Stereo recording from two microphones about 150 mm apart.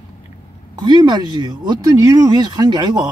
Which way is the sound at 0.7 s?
30° right (ahead or behind).